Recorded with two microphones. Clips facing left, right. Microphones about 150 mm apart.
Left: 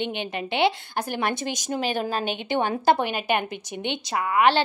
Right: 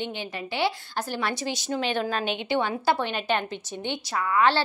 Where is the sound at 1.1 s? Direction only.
50° left (ahead or behind).